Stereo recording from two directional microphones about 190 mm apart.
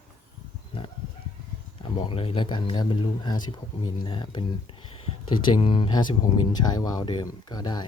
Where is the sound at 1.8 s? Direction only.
25° left (ahead or behind).